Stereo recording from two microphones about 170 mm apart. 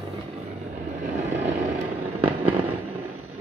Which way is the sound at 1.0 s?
45° right (ahead or behind).